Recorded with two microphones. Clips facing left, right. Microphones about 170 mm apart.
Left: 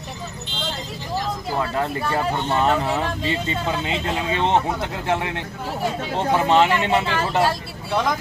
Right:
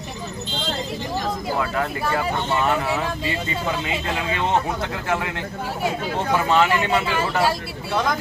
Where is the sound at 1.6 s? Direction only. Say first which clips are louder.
Left 3 dB; 25° left (ahead or behind).